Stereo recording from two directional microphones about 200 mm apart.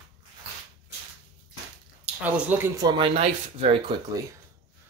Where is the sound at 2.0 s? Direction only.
10° right (ahead or behind); by 3.9 s 30° right (ahead or behind).